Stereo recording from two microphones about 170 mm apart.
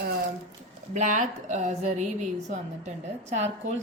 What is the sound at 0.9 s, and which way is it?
A woman's voice, 45° right (ahead or behind).